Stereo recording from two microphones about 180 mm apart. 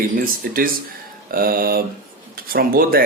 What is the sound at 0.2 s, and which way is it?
Speech, 50° right (ahead or behind).